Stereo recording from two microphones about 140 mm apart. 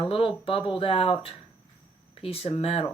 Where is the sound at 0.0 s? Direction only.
40° left (ahead or behind).